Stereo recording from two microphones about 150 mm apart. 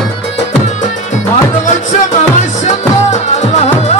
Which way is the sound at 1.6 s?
55° left (ahead or behind).